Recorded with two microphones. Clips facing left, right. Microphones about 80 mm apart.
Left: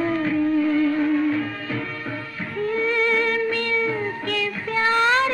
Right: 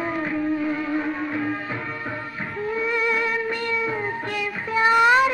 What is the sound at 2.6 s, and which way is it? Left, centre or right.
Music, centre.